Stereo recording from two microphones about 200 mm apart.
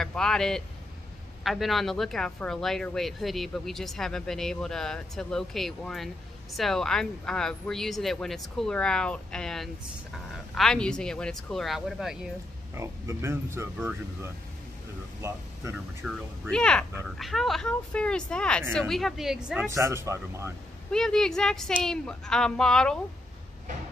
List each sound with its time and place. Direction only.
0.0 s a man's voice: 5° left (ahead or behind)
12.7 s speech: 15° right (ahead or behind)
15.2 s speech: 10° right (ahead or behind)
16.0 s speech: 5° left (ahead or behind)
19.7 s speech: 15° right (ahead or behind)
20.9 s speech: 5° left (ahead or behind)